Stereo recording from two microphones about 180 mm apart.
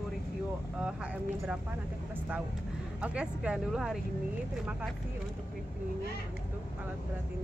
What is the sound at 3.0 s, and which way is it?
Speech, 5° right (ahead or behind).